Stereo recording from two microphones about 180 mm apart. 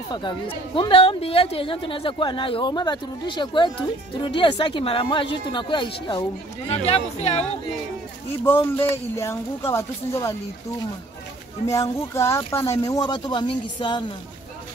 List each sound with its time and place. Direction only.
0.1 s speech: 25° left (ahead or behind)
8.5 s speech: 10° left (ahead or behind)
11.6 s speech: 15° left (ahead or behind)